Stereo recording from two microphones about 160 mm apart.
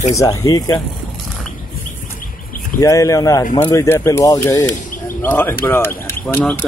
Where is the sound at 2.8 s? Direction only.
20° left (ahead or behind).